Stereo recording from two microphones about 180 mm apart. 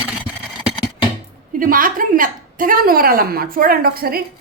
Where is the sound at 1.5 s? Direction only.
50° right (ahead or behind).